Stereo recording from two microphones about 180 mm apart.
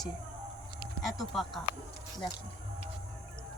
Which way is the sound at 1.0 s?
Centre (ahead or behind).